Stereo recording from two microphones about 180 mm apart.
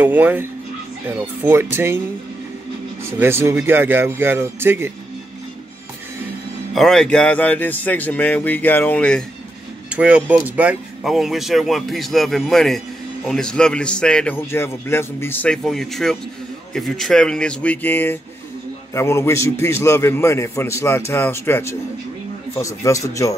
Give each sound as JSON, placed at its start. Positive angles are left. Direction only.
{"t": 0.0, "sound": "speech", "side_deg": -10}
{"t": 3.1, "sound": "speech", "side_deg": -15}
{"t": 6.7, "sound": "a man's voice", "side_deg": 0}
{"t": 9.9, "sound": "a man's voice", "side_deg": -10}